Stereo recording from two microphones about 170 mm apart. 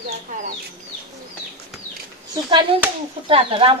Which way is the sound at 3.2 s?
30° right (ahead or behind).